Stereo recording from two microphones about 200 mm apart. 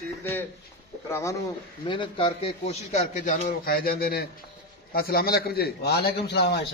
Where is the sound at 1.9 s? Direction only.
25° left (ahead or behind).